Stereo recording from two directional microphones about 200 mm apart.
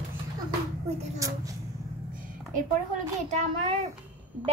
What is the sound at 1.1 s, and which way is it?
Speech, 15° right (ahead or behind).